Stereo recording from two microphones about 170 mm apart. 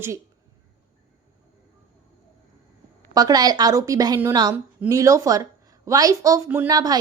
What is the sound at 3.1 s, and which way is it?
A woman's voice, 20° right (ahead or behind).